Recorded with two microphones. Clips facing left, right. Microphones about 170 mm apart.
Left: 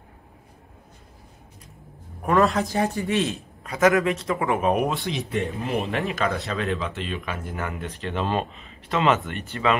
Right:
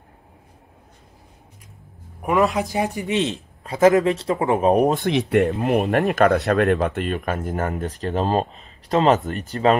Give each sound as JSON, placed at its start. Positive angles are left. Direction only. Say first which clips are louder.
{"t": 2.2, "sound": "a man's voice", "louder": "right 1 dB", "side_deg": -10}
{"t": 5.0, "sound": "speech", "louder": "right 9 dB", "side_deg": -65}
{"t": 5.6, "sound": "speech", "louder": "right 7 dB", "side_deg": -50}